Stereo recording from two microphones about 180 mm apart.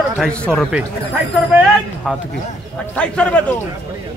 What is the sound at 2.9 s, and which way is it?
Speech, 5° left (ahead or behind).